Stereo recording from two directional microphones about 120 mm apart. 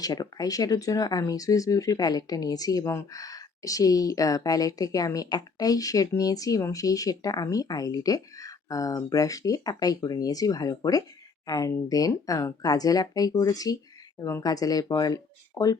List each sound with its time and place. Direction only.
0.0 s speech: 30° left (ahead or behind)